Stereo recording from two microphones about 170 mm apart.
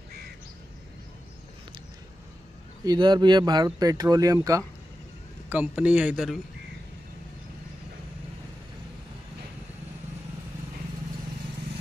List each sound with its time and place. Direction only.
2.8 s speech: 25° right (ahead or behind)
5.5 s speech: 10° right (ahead or behind)